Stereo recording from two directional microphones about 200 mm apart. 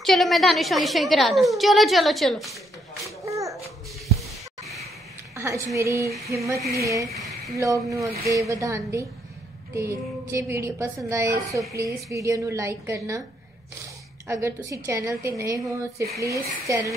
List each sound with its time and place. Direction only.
0.0 s a woman's voice: centre (ahead or behind)
3.3 s babbling: 15° right (ahead or behind)
4.6 s a sound: centre (ahead or behind)
5.3 s a sound: 15° right (ahead or behind)
5.8 s a woman's voice: 15° right (ahead or behind)
14.2 s a woman's voice: 15° right (ahead or behind)